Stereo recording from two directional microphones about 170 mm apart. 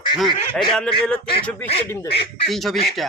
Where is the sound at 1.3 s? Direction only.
35° left (ahead or behind).